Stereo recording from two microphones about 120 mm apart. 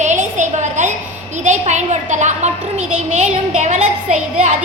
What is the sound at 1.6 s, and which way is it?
A child's voice, 80° right.